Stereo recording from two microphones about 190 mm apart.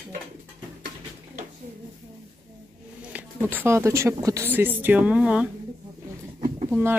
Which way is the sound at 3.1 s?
10° right (ahead or behind).